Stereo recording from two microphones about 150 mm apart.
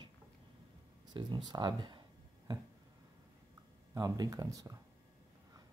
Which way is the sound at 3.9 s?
20° right (ahead or behind).